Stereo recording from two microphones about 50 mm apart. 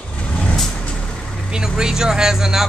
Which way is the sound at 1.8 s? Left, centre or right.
Centre.